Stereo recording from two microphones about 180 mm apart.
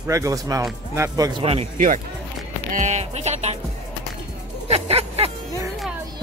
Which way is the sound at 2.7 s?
40° right (ahead or behind).